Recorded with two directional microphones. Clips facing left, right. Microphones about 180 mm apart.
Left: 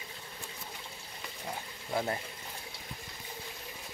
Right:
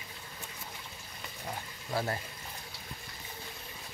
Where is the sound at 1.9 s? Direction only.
20° left (ahead or behind).